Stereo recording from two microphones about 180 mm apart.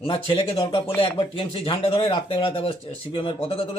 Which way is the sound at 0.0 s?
30° left (ahead or behind).